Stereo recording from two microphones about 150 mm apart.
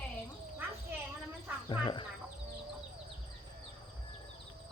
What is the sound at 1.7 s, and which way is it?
Speech, 35° left (ahead or behind).